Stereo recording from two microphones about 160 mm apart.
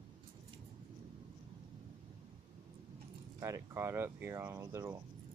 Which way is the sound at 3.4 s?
20° right (ahead or behind).